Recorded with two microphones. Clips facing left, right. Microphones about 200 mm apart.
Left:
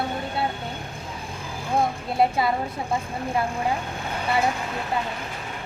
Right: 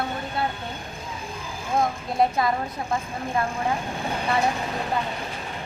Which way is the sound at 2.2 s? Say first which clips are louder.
Even; 5° left (ahead or behind).